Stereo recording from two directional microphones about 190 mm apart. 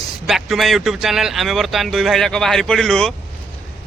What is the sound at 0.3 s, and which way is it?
Speech, centre (ahead or behind).